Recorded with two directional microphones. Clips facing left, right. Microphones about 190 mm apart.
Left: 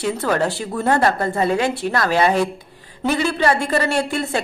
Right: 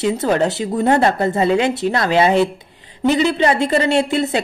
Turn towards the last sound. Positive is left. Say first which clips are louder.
# right 5 dB
turn(degrees=-20)  # may be behind; listen again after turning